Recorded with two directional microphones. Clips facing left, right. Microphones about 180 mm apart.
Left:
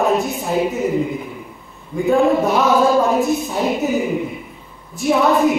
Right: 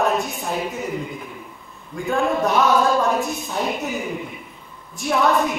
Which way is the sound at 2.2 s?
20° left (ahead or behind).